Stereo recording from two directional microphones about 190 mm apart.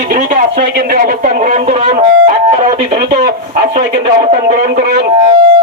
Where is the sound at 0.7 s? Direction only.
55° right (ahead or behind); by 1.9 s 35° right (ahead or behind).